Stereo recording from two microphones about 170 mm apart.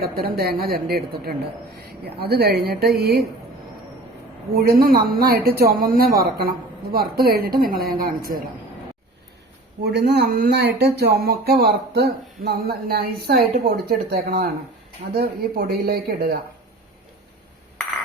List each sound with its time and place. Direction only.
0.0 s a man's voice: 65° right (ahead or behind)
4.5 s a woman's voice: 60° right (ahead or behind)
9.8 s a man's voice: 75° right (ahead or behind)